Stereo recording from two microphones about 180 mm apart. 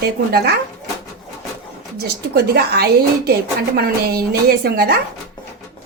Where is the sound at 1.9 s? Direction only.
65° right (ahead or behind).